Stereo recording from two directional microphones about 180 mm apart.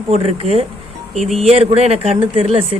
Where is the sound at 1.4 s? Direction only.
35° right (ahead or behind).